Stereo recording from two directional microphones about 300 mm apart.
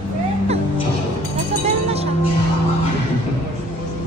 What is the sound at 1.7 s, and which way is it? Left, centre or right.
Music, centre.